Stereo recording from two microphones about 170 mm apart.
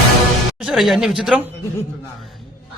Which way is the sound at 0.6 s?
Centre (ahead or behind).